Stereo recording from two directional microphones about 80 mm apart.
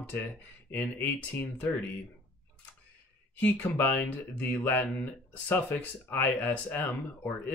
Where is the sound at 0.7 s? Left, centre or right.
Left.